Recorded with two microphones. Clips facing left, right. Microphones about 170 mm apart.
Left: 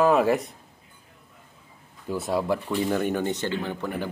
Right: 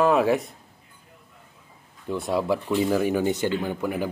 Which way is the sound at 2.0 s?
Centre (ahead or behind).